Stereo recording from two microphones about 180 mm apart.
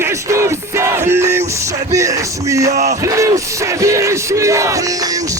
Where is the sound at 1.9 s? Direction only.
15° right (ahead or behind).